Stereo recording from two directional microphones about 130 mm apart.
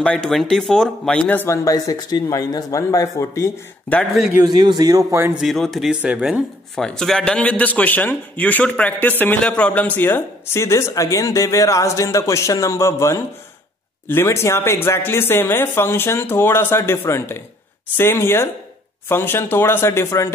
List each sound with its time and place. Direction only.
0.0 s speech: 10° left (ahead or behind)
3.9 s speech: 10° left (ahead or behind)
4.5 s a man's voice: 35° right (ahead or behind)
5.3 s speech: centre (ahead or behind); by 20.3 s 20° left (ahead or behind)